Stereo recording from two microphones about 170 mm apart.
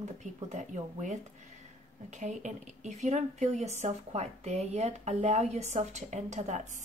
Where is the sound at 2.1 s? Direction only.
45° right (ahead or behind).